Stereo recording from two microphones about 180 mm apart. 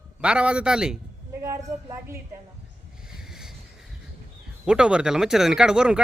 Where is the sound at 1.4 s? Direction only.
15° right (ahead or behind).